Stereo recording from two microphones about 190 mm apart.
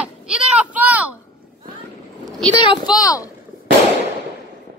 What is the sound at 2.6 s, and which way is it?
Speech, 25° left (ahead or behind).